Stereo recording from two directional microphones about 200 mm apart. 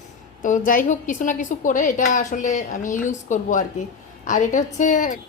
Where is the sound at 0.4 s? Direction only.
40° left (ahead or behind).